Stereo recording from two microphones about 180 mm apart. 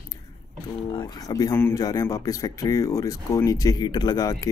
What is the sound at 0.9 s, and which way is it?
A man's voice, 20° left (ahead or behind).